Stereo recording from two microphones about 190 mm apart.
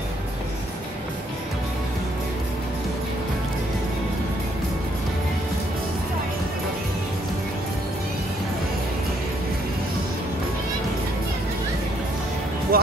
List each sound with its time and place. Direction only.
12.7 s music: 50° right (ahead or behind)